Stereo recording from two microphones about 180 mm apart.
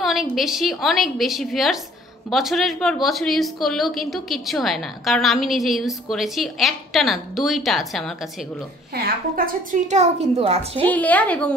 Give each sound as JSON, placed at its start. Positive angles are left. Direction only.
{"t": 0.0, "sound": "a woman's voice", "side_deg": 0}
{"t": 8.9, "sound": "a woman's voice", "side_deg": -55}
{"t": 9.8, "sound": "a child's voice", "side_deg": -40}
{"t": 10.9, "sound": "a woman's voice", "side_deg": 10}